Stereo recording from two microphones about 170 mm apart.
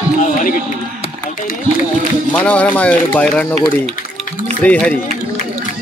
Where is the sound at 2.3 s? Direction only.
10° left (ahead or behind).